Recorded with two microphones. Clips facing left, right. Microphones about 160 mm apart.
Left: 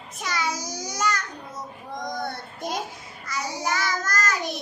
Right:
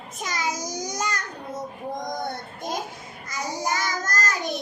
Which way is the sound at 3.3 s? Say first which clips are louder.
Even; 45° right (ahead or behind).